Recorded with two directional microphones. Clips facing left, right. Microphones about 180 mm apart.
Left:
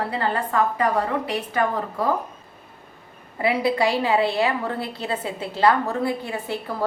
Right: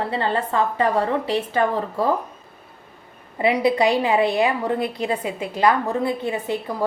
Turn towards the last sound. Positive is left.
turn(degrees=-20)  # may be behind; listen again after turning